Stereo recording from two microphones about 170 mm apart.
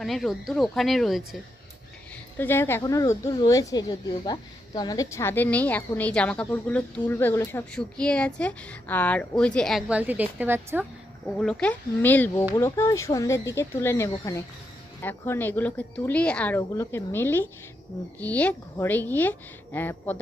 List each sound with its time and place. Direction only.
0.0 s speech: centre (ahead or behind)
2.4 s speech: 15° left (ahead or behind); by 10.8 s 10° right (ahead or behind)
11.3 s speech: 5° left (ahead or behind)